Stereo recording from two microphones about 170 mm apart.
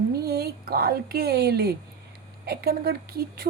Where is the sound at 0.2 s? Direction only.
65° right (ahead or behind).